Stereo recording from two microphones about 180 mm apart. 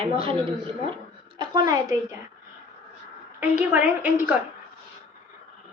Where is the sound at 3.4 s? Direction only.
10° right (ahead or behind).